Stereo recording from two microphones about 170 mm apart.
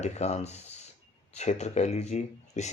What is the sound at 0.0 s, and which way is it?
Speech, 40° left (ahead or behind).